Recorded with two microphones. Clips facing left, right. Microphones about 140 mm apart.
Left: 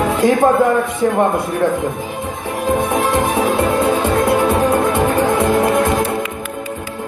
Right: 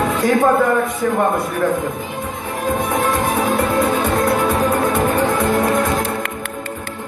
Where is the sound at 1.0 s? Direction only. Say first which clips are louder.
Left 5 dB; 30° left (ahead or behind).